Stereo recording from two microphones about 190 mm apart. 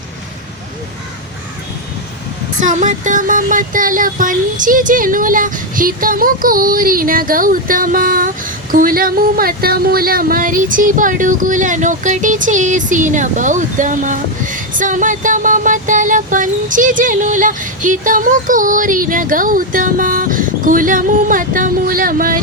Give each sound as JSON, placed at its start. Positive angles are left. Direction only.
{"t": 2.6, "sound": "speech", "side_deg": -40}